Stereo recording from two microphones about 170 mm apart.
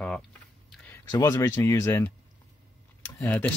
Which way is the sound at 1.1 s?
20° left (ahead or behind).